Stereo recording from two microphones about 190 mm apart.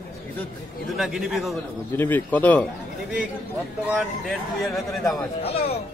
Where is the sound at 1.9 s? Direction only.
10° left (ahead or behind).